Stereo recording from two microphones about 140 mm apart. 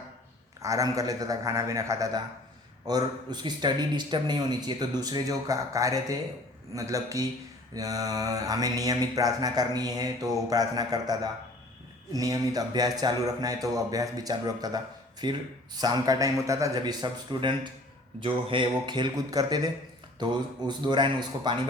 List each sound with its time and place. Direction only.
0.6 s mantra: 25° right (ahead or behind)
18.2 s speech: 35° right (ahead or behind)